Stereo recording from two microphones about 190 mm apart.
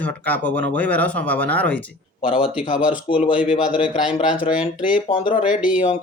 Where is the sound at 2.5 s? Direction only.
5° right (ahead or behind).